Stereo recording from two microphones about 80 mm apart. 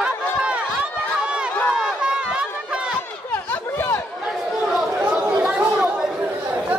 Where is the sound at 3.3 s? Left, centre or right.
Left.